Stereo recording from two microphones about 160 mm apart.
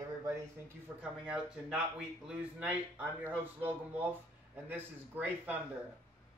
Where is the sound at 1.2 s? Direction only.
5° right (ahead or behind).